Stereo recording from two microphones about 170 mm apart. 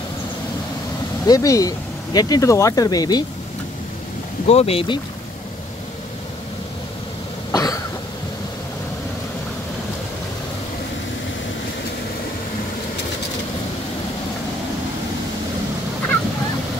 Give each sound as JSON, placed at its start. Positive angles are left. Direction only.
{"t": 1.2, "sound": "speech", "side_deg": 20}
{"t": 4.5, "sound": "speech", "side_deg": 35}
{"t": 7.5, "sound": "cough", "side_deg": 20}